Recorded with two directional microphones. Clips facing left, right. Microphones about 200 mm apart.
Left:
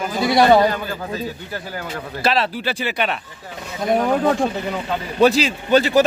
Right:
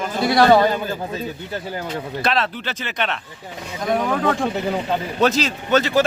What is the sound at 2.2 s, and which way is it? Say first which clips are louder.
Speech: left 4 dB; 5° left (ahead or behind).